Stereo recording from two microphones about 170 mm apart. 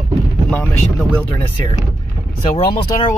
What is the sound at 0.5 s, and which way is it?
Speech, 5° left (ahead or behind).